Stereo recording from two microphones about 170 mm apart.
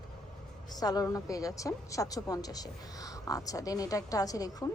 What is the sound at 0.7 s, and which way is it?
A woman's voice, 20° left (ahead or behind).